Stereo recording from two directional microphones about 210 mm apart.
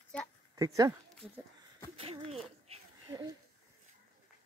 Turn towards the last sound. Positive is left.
turn(degrees=-20)  # may be behind; listen again after turning